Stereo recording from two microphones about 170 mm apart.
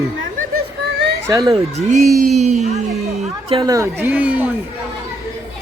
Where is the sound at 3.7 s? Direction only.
15° right (ahead or behind).